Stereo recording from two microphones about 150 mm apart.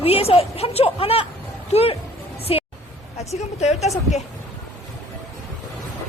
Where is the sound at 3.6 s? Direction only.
45° left (ahead or behind).